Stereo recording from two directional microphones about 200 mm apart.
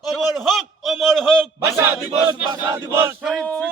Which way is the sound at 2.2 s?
20° right (ahead or behind).